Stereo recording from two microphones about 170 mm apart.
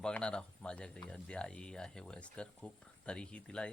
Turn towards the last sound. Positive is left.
turn(degrees=5)  # may be behind; listen again after turning